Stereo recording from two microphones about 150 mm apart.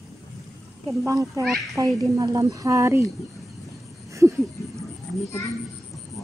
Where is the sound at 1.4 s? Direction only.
Centre (ahead or behind).